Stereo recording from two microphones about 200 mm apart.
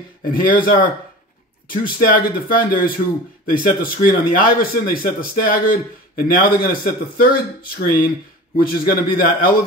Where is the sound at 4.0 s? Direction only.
45° left (ahead or behind).